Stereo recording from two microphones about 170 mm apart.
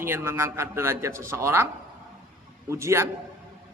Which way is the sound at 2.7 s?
15° right (ahead or behind).